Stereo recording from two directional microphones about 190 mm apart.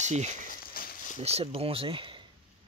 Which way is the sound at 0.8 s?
50° left (ahead or behind).